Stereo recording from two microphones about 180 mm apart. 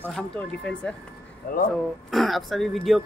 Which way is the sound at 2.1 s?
Centre (ahead or behind).